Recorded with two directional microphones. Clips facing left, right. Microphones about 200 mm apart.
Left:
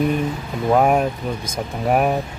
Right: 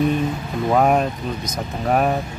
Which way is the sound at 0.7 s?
10° left (ahead or behind).